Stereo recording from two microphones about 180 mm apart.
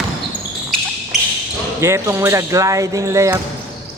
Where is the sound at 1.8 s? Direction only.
15° right (ahead or behind).